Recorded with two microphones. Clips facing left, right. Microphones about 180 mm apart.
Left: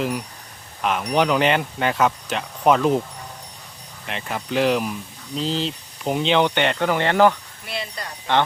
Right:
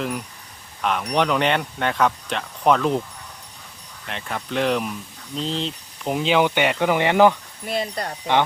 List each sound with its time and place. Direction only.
0.8 s speech: 5° left (ahead or behind)
4.0 s speech: 5° left (ahead or behind); by 7.3 s 15° right (ahead or behind)
7.7 s speech: 50° right (ahead or behind)